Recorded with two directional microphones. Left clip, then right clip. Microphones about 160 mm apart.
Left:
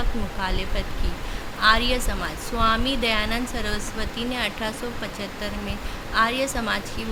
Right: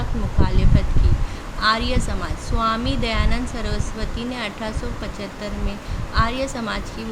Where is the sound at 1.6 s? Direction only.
10° right (ahead or behind).